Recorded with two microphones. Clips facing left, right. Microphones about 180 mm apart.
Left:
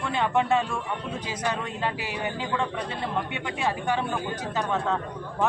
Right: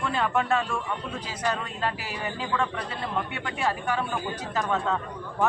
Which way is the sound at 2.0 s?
20° left (ahead or behind).